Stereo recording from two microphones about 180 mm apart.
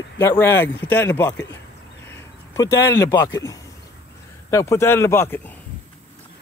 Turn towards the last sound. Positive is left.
turn(degrees=10)  # may be behind; listen again after turning